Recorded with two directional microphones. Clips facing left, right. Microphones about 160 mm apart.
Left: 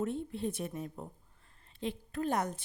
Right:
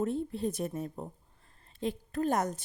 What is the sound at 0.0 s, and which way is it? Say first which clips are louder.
Speech: right 3 dB; 35° right (ahead or behind).